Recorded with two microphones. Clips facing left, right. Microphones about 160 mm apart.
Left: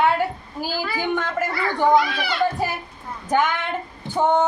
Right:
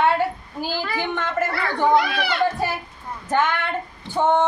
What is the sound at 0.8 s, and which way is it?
Speech, 10° left (ahead or behind).